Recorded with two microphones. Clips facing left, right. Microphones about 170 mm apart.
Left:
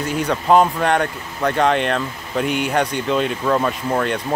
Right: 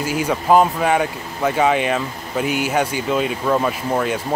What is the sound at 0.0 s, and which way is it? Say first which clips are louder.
Speech: even; 5° right (ahead or behind).